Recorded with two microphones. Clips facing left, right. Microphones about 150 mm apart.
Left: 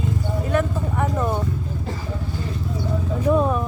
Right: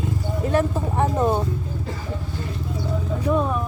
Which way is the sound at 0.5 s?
30° right (ahead or behind).